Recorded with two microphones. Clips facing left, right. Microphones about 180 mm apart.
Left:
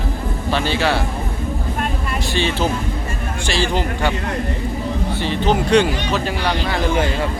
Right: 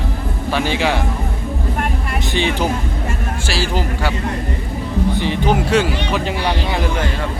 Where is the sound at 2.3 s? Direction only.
15° right (ahead or behind).